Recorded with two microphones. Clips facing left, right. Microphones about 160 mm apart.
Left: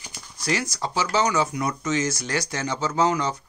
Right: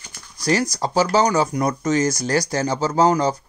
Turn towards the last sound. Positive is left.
turn(degrees=-35)  # may be behind; listen again after turning